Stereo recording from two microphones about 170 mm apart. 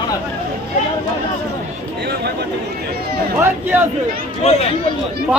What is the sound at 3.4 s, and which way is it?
Chatter, 10° right (ahead or behind).